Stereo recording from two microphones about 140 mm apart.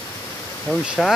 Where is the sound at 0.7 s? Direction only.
5° left (ahead or behind).